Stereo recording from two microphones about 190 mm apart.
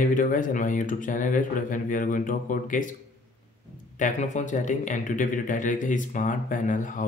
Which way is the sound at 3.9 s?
40° left (ahead or behind).